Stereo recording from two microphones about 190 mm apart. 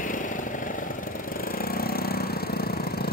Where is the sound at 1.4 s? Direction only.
50° left (ahead or behind).